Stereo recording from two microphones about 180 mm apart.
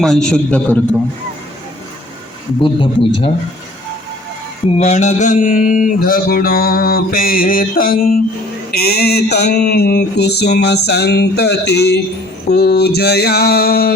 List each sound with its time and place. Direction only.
0.0 s a man's voice: 5° left (ahead or behind)
2.6 s a man's voice: 30° left (ahead or behind)
4.8 s mantra: 40° left (ahead or behind); by 13.9 s 60° left (ahead or behind)